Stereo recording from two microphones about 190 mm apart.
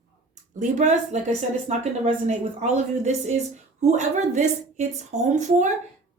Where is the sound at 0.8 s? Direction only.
40° right (ahead or behind).